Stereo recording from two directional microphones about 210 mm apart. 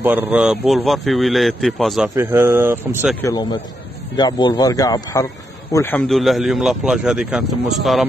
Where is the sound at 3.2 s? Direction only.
20° left (ahead or behind); by 8.0 s centre (ahead or behind).